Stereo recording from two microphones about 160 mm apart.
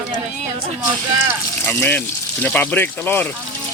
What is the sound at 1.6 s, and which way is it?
Speech, 15° left (ahead or behind).